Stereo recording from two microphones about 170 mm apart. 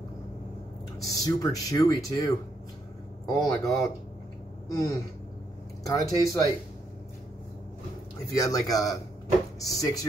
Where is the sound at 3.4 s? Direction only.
20° left (ahead or behind).